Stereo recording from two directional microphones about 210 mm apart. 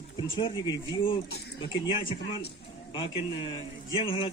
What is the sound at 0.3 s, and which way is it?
Speech, 20° left (ahead or behind).